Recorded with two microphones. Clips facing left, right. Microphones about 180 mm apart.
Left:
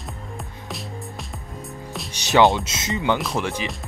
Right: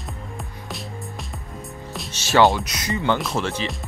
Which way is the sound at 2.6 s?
25° left (ahead or behind).